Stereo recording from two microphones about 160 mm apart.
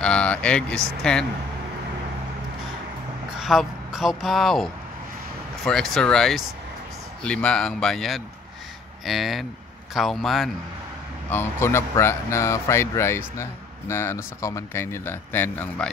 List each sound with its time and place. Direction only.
0.0 s speech: 5° left (ahead or behind)
3.3 s speech: centre (ahead or behind)
11.2 s speech: 15° left (ahead or behind)